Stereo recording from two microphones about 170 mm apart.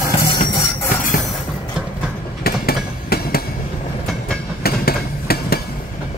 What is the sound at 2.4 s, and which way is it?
Train, 65° left (ahead or behind).